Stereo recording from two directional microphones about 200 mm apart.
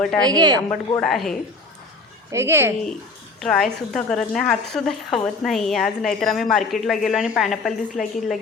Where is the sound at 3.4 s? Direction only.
Centre (ahead or behind).